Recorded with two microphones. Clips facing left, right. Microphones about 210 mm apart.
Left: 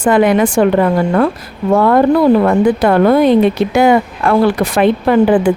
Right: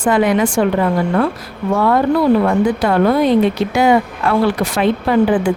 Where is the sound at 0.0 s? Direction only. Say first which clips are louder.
Left 3 dB; 55° left (ahead or behind).